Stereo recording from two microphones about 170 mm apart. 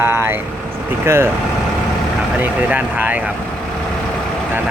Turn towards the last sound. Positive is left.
turn(degrees=-10)  # may be behind; listen again after turning